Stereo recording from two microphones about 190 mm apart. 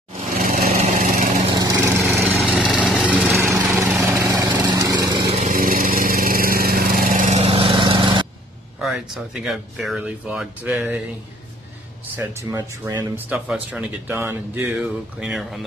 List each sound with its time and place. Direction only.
0.4 s lawn mower: 45° right (ahead or behind)
1.5 s lawn mower: 15° right (ahead or behind)
2.0 s lawn mower: centre (ahead or behind)
4.0 s lawn mower: 15° right (ahead or behind)
5.3 s lawn mower: 40° right (ahead or behind); by 8.3 s 25° right (ahead or behind)
8.8 s speech: 5° right (ahead or behind)
12.2 s speech: 15° right (ahead or behind)
13.1 s speech: 5° right (ahead or behind)